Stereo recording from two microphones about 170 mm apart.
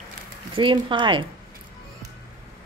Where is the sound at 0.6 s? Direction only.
30° right (ahead or behind).